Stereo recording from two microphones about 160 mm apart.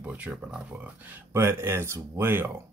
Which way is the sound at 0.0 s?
10° right (ahead or behind).